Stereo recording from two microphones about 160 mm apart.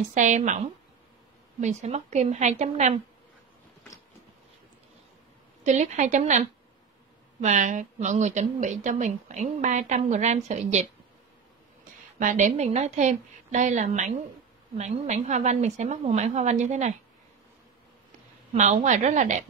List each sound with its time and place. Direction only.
0.1 s a woman's voice: 50° right (ahead or behind)
1.6 s a woman's voice: 45° right (ahead or behind)
5.6 s a woman's voice: 45° right (ahead or behind)
12.2 s a woman's voice: 50° right (ahead or behind)
18.5 s a woman's voice: 45° right (ahead or behind)